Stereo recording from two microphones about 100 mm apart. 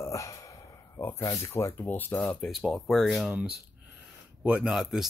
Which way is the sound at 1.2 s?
35° left (ahead or behind).